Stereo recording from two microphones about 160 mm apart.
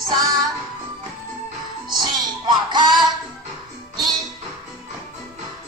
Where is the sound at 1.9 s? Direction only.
25° right (ahead or behind).